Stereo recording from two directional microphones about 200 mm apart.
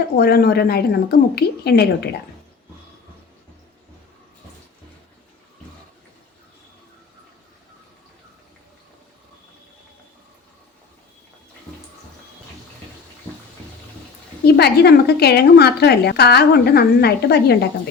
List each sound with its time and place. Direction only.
0.2 s a woman's voice: 50° left (ahead or behind)
14.4 s a woman's voice: 55° left (ahead or behind)